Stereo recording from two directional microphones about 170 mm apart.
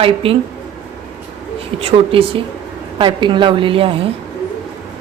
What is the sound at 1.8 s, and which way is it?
A woman's voice, 35° right (ahead or behind).